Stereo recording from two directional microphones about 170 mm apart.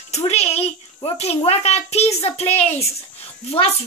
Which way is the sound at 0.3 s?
40° left (ahead or behind).